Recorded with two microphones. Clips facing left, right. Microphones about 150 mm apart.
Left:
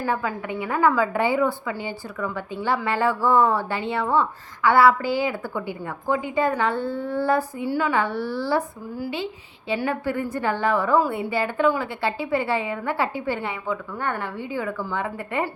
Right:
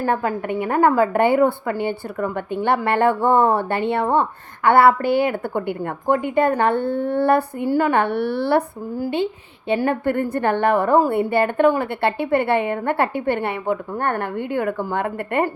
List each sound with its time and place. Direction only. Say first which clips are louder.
0.0 s a woman's voice: right 5 dB; 50° right (ahead or behind)